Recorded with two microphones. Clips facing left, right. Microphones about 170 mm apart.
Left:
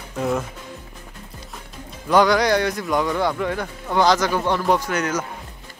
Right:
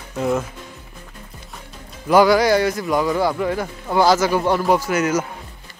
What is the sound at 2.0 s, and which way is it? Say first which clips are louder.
A man's voice: right 3 dB; 5° right (ahead or behind).